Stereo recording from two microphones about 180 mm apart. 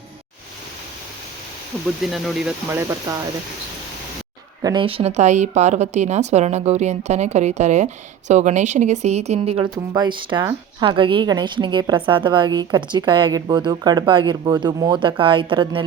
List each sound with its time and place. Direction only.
1.7 s speech: 5° left (ahead or behind)
4.6 s a woman's voice: 25° right (ahead or behind)